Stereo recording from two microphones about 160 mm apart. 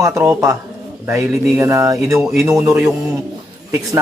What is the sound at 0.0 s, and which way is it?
Speech, 15° right (ahead or behind).